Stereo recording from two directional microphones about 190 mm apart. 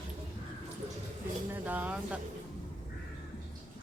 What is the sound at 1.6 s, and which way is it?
Speech, 10° right (ahead or behind).